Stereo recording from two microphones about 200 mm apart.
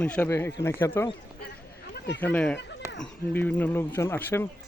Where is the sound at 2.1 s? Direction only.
10° left (ahead or behind).